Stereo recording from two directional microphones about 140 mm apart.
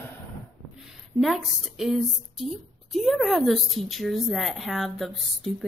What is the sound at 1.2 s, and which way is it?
A woman's voice, centre (ahead or behind).